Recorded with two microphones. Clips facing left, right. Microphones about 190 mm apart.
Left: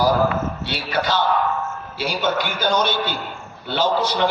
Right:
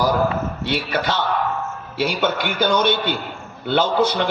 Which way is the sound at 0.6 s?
55° right (ahead or behind).